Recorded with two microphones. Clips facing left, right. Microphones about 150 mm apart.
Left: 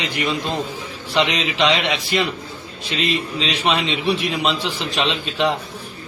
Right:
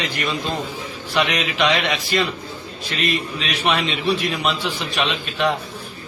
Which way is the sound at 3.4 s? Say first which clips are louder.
Left 1 dB; 25° left (ahead or behind).